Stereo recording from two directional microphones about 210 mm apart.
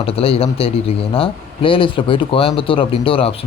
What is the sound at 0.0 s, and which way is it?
A man's voice, 25° left (ahead or behind).